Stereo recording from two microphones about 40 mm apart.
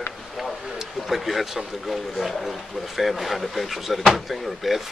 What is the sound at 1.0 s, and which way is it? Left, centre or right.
Speech, centre.